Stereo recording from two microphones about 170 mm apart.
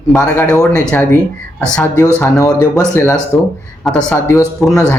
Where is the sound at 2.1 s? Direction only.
15° left (ahead or behind).